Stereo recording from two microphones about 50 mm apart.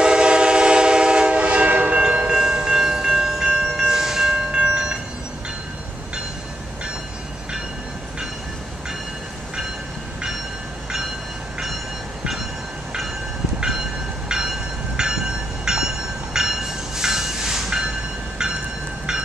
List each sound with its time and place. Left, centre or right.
0.0 s train: centre
13.6 s train: centre